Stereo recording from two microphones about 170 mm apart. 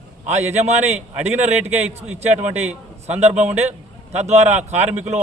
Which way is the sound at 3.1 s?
40° right (ahead or behind).